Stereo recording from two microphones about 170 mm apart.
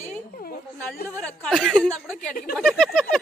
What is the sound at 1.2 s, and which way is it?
Speech, 5° left (ahead or behind).